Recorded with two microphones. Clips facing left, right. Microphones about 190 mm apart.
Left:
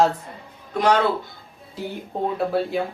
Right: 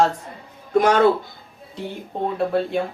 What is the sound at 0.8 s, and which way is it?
Speech, 45° right (ahead or behind).